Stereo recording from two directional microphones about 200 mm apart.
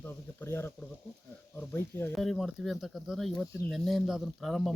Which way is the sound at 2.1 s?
Centre (ahead or behind).